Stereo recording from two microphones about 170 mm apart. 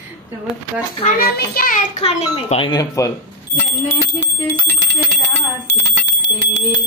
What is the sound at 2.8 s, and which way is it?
Speech, 20° left (ahead or behind).